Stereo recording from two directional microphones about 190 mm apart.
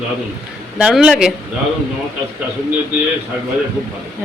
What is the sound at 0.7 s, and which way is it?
Speech, 5° right (ahead or behind).